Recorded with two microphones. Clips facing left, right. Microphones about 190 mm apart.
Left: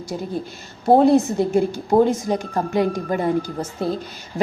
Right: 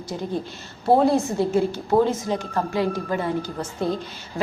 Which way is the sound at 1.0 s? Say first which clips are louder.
Left 4 dB; 20° left (ahead or behind).